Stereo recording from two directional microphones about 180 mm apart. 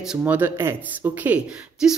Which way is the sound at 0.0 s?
5° right (ahead or behind).